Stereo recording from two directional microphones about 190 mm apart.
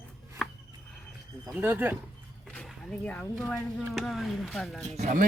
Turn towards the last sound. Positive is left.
turn(degrees=-40)  # may be behind; listen again after turning